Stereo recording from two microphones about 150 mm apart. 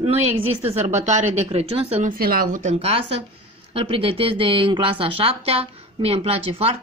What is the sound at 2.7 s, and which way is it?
A woman's voice, 40° right (ahead or behind).